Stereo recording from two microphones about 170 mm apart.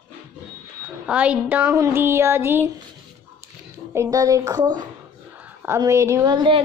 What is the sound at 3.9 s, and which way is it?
A woman's voice, 20° right (ahead or behind).